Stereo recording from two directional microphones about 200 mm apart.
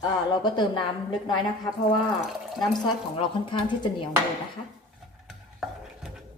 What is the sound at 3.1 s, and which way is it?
Speech, 25° left (ahead or behind).